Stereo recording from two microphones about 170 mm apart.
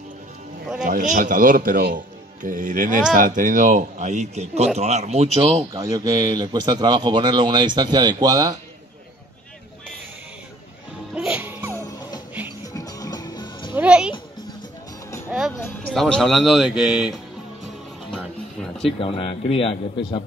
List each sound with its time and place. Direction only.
0.8 s speech: 50° right (ahead or behind)
5.8 s speech: 20° right (ahead or behind)
11.1 s music: 5° right (ahead or behind)
12.6 s music: 20° left (ahead or behind)
13.7 s music: 5° right (ahead or behind)
15.9 s speech: centre (ahead or behind)
18.1 s music: 5° left (ahead or behind)
18.9 s speech: 30° left (ahead or behind)